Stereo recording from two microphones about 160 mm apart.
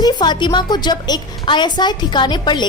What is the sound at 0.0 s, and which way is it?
A woman's voice, 25° left (ahead or behind).